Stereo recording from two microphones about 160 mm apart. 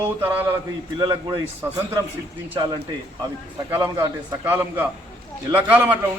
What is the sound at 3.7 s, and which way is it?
A man's voice, 20° right (ahead or behind).